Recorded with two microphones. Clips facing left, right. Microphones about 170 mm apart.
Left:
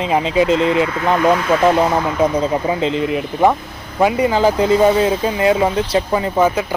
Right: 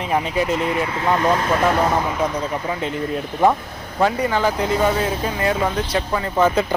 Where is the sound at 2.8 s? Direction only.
90° left.